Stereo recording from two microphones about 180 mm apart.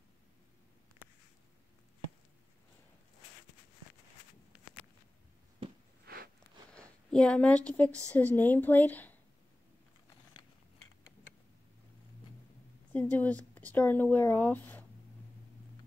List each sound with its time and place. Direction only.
6.0 s a sound: 55° right (ahead or behind)
6.7 s speech: 5° left (ahead or behind)
12.9 s speech: 10° left (ahead or behind)